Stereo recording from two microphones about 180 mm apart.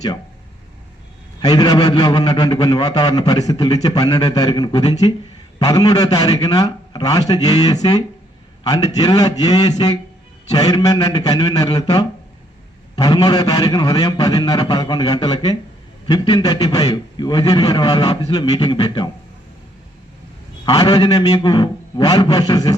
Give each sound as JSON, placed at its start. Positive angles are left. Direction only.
{"t": 1.4, "sound": "a man's voice", "side_deg": 20}
{"t": 20.7, "sound": "a man's voice", "side_deg": 20}